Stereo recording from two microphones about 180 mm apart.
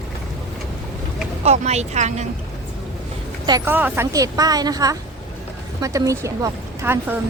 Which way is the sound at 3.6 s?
10° right (ahead or behind).